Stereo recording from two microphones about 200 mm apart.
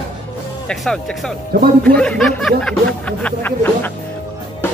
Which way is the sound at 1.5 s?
50° right (ahead or behind).